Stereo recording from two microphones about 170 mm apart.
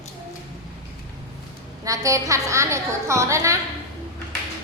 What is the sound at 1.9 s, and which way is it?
A woman's voice, 20° right (ahead or behind).